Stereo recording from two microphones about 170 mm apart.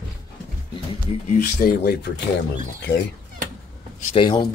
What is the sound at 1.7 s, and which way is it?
Speech, 70° left (ahead or behind).